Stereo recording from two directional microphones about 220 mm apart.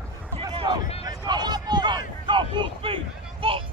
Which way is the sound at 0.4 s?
20° right (ahead or behind).